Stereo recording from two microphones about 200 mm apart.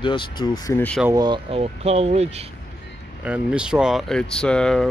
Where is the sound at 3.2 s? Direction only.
5° right (ahead or behind).